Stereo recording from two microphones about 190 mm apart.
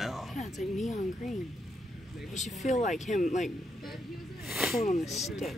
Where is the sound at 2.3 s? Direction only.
40° left (ahead or behind).